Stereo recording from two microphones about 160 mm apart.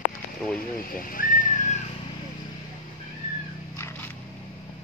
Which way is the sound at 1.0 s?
60° left (ahead or behind).